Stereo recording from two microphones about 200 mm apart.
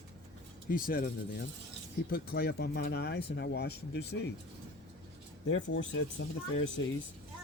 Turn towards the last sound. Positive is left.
turn(degrees=70)  # may be behind; listen again after turning